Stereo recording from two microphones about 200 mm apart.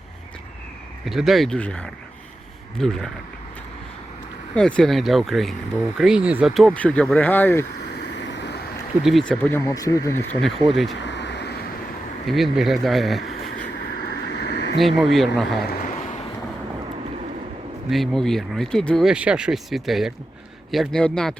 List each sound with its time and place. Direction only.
1.0 s speech: centre (ahead or behind)
4.5 s speech: 5° left (ahead or behind)
7.9 s vehicle: 60° left (ahead or behind)
9.0 s speech: centre (ahead or behind)
10.4 s speech: centre (ahead or behind)
10.9 s a sound: 60° left (ahead or behind)
12.3 s speech: centre (ahead or behind)
14.3 s a sound: 55° left (ahead or behind)
14.8 s speech: centre (ahead or behind)
15.6 s a sound: 45° left (ahead or behind)
17.8 s speech: centre (ahead or behind)